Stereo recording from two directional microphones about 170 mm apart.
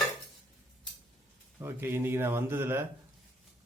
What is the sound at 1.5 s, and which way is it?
Speech, 15° right (ahead or behind).